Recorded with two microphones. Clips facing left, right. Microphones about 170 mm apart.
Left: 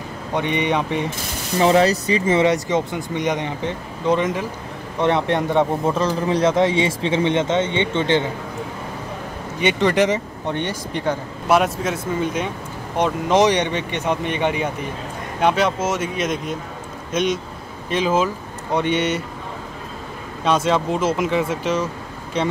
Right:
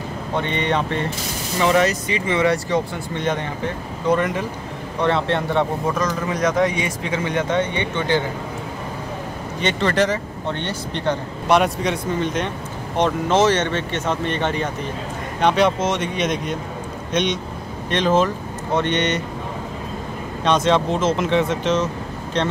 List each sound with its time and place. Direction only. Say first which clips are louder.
0.3 s speech: left 2 dB; 15° left (ahead or behind)
1.6 s speech: left 2 dB; 35° left (ahead or behind)
2.4 s a man's voice: left 1 dB; 20° left (ahead or behind)
5.0 s a man's voice: left 1 dB; 15° left (ahead or behind)
9.6 s speech: left 2 dB; 15° left (ahead or behind)
20.4 s speech: right 1 dB; 5° left (ahead or behind)